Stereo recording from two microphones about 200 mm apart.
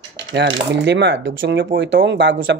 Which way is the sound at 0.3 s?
60° right (ahead or behind).